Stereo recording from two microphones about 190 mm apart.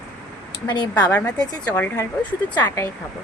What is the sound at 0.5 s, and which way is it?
Speech, 25° left (ahead or behind).